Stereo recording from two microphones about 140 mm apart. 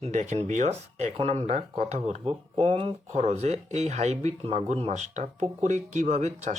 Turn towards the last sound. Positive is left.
turn(degrees=-55)  # may be behind; listen again after turning